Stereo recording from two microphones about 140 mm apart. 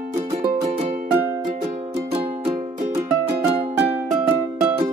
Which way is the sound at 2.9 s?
20° right (ahead or behind).